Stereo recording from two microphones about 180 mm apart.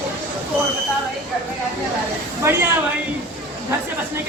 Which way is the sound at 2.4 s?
15° right (ahead or behind).